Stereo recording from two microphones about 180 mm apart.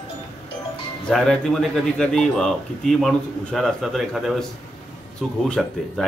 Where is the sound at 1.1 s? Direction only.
5° left (ahead or behind).